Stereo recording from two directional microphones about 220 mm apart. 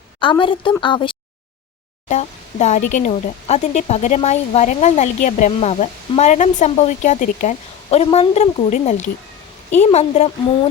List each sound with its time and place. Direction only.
0.2 s a woman's voice: 20° left (ahead or behind)